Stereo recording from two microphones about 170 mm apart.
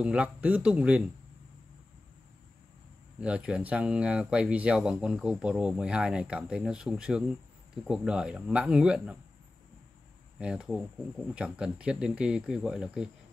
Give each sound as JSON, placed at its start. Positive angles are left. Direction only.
{"t": 0.0, "sound": "speech", "side_deg": -5}
{"t": 3.2, "sound": "speech", "side_deg": -5}
{"t": 10.4, "sound": "speech", "side_deg": -5}